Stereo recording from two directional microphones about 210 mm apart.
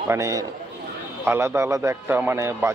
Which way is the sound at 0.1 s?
15° right (ahead or behind).